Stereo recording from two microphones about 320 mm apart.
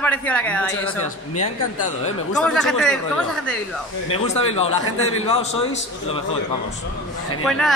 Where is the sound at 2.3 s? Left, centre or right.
Centre.